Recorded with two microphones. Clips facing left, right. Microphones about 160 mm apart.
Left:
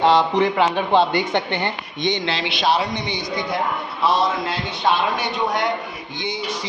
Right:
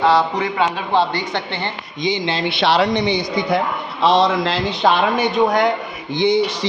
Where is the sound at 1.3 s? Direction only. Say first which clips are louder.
Left 2 dB; 15° left (ahead or behind).